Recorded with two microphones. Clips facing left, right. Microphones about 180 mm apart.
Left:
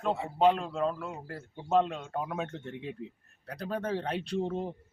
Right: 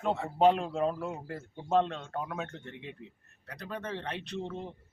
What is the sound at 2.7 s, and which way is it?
A man's voice, 30° left (ahead or behind).